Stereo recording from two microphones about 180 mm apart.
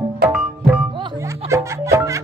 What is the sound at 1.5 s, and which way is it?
Music, 15° right (ahead or behind).